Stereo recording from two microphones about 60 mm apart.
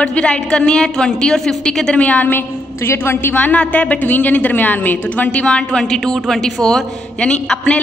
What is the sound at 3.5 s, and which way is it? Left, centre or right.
A woman's voice, left.